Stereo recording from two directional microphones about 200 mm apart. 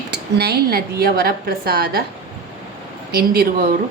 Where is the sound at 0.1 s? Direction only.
55° right (ahead or behind).